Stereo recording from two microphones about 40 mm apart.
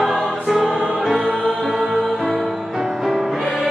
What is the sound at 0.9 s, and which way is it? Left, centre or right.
Music, centre.